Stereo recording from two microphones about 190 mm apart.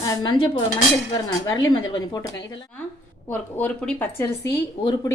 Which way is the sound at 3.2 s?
5° left (ahead or behind).